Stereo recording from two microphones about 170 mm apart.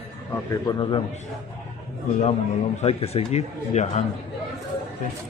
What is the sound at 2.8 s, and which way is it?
A man's voice, 35° left (ahead or behind).